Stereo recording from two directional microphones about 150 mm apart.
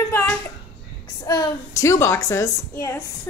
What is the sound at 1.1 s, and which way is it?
A woman's voice, 25° left (ahead or behind).